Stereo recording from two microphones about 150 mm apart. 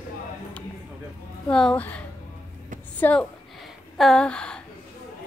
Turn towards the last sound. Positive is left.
turn(degrees=5)  # may be behind; listen again after turning